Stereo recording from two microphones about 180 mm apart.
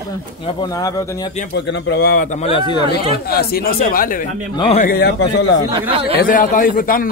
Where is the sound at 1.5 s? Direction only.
65° left (ahead or behind).